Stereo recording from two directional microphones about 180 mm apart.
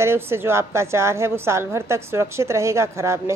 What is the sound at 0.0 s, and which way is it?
A woman's voice, 15° right (ahead or behind).